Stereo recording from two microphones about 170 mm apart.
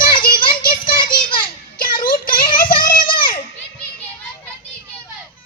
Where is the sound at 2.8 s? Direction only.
55° left (ahead or behind).